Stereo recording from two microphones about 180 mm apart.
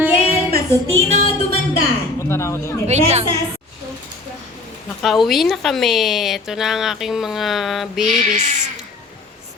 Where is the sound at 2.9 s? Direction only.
35° right (ahead or behind).